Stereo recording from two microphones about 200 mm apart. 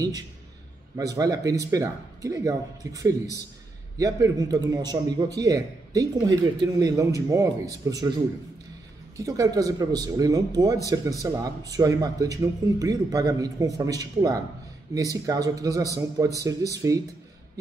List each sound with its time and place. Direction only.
0.9 s speech: 15° right (ahead or behind)
9.1 s speech: 15° right (ahead or behind)